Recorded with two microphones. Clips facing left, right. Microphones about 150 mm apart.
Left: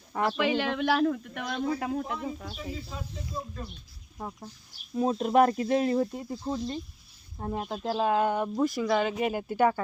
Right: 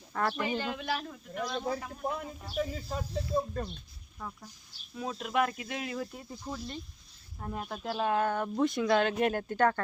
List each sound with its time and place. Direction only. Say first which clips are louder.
0.1 s speech: left 3 dB; 20° left (ahead or behind)
0.3 s a man's voice: left 6 dB; 85° left
2.6 s speech: right 4 dB; 50° right (ahead or behind)
4.2 s speech: left 5 dB; 35° left (ahead or behind); by 8.4 s 15° left (ahead or behind)
8.5 s speech: right 2 dB; 5° left (ahead or behind)